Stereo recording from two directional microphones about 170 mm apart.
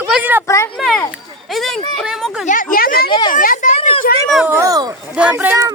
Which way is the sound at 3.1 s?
25° left (ahead or behind).